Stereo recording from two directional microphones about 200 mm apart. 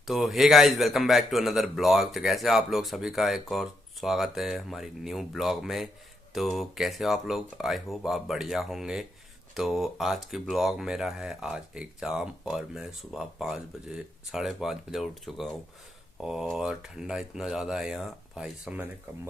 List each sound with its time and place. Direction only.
0.0 s speech: centre (ahead or behind)